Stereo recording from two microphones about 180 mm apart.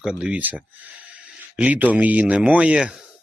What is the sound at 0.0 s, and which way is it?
Speech, 5° right (ahead or behind).